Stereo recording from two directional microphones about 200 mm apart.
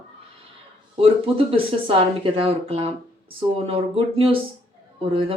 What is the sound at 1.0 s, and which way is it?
Speech, 30° right (ahead or behind).